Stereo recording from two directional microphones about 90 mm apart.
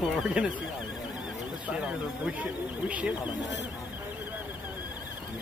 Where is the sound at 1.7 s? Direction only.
10° right (ahead or behind).